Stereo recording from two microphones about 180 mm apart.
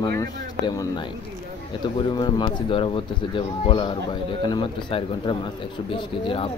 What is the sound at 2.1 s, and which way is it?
Speech, 25° left (ahead or behind).